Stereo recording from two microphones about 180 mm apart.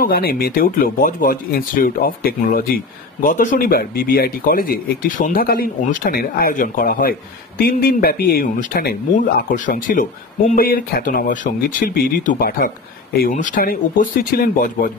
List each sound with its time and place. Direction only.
0.0 s speech: 55° left (ahead or behind)